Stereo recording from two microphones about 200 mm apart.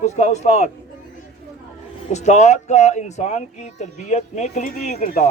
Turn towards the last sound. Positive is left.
turn(degrees=40)  # may be behind; listen again after turning